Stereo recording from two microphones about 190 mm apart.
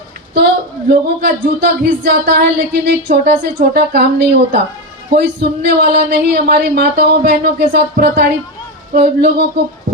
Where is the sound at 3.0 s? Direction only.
50° right (ahead or behind).